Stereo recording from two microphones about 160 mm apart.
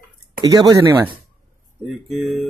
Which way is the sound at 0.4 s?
25° right (ahead or behind).